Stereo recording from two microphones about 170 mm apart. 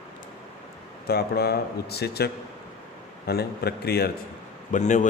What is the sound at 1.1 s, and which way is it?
Speech, 70° left (ahead or behind).